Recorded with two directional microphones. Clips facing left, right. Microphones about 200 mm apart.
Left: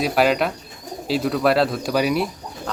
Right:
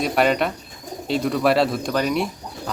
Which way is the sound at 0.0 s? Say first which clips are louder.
Left 1 dB; centre (ahead or behind).